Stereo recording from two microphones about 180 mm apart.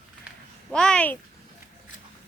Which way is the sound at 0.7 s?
5° left (ahead or behind).